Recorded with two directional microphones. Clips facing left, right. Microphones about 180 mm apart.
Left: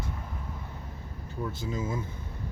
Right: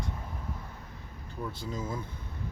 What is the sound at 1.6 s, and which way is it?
Speech, 5° left (ahead or behind).